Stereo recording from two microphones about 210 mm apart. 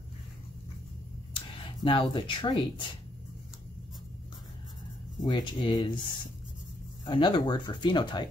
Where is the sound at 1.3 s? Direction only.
25° left (ahead or behind).